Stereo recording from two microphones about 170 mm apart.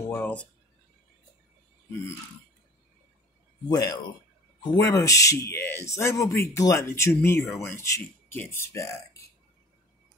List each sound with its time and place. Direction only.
0.1 s speech: 10° left (ahead or behind)
3.6 s speech: 20° left (ahead or behind)